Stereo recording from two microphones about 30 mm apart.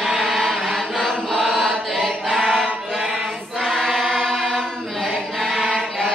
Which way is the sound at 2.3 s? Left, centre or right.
Centre.